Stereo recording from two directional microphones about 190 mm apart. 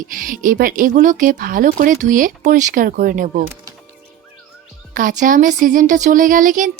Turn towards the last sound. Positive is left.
turn(degrees=-45)  # may be behind; listen again after turning